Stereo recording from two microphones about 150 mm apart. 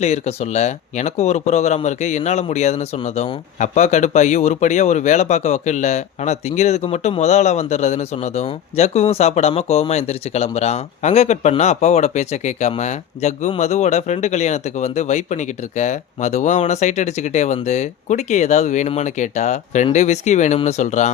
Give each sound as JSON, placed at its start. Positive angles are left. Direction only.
{"t": 0.0, "sound": "speech", "side_deg": 45}